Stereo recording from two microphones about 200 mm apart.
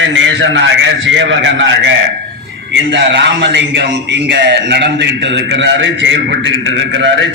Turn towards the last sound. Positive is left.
turn(degrees=-70)  # may be behind; listen again after turning